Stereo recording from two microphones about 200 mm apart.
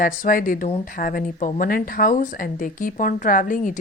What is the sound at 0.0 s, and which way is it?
Speech, 40° left (ahead or behind).